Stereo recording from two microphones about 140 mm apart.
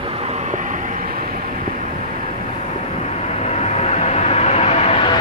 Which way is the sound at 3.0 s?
50° left (ahead or behind).